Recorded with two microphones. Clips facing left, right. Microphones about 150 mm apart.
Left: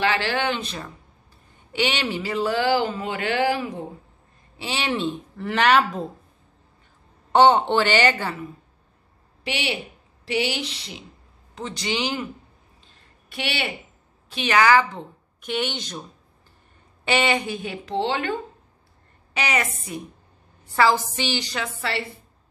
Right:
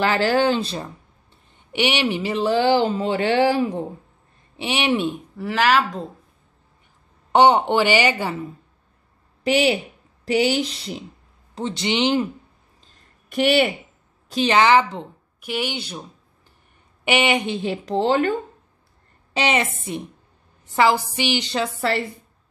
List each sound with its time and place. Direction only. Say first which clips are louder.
0.0 s speech: right 5 dB; 40° right (ahead or behind)
1.7 s speech: right 4 dB; 20° right (ahead or behind)
4.6 s speech: right 5 dB; 15° right (ahead or behind)
5.5 s speech: even; centre (ahead or behind)
7.3 s speech: right 1 dB; 15° right (ahead or behind)
9.4 s speech: right 10 dB; 40° right (ahead or behind)
11.5 s speech: right 5 dB; 25° right (ahead or behind)
12.8 s a sound: left 1 dB; 45° right (ahead or behind)
14.3 s speech: right 2 dB; 30° right (ahead or behind)
15.4 s speech: right 1 dB; 5° right (ahead or behind); by 18.3 s 40° right (ahead or behind)
19.3 s speech: right 4 dB; 25° right (ahead or behind)